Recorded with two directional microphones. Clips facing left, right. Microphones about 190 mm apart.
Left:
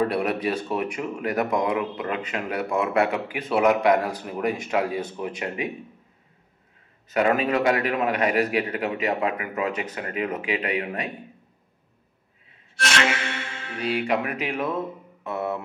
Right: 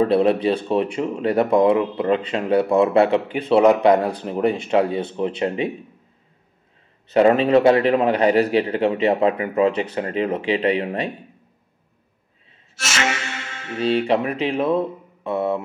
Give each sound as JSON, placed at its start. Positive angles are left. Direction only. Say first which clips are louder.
{"t": 0.0, "sound": "a man's voice", "louder": "right 7 dB", "side_deg": -30}
{"t": 7.1, "sound": "a man's voice", "louder": "right 7 dB", "side_deg": -30}
{"t": 12.7, "sound": "music", "louder": "left 2 dB", "side_deg": -5}
{"t": 13.7, "sound": "a man's voice", "louder": "right 6 dB", "side_deg": -30}